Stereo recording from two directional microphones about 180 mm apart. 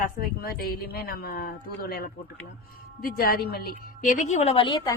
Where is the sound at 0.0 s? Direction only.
55° left (ahead or behind).